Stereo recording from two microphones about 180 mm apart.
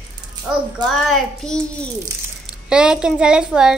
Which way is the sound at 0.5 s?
Centre (ahead or behind).